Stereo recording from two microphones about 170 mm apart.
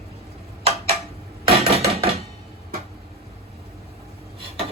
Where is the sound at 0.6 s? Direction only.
35° right (ahead or behind).